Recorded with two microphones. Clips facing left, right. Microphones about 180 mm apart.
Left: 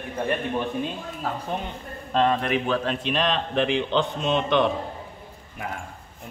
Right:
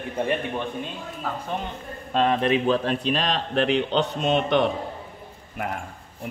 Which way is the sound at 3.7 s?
55° right (ahead or behind).